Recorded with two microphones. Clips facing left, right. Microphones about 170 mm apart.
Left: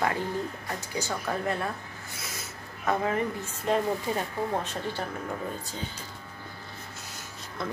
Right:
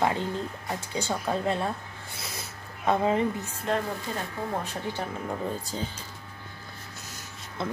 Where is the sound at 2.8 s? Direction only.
20° right (ahead or behind).